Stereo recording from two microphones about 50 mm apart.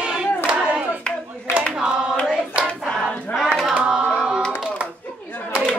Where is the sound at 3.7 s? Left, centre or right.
Right.